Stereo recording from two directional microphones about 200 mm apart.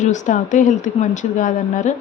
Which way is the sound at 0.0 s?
40° left (ahead or behind).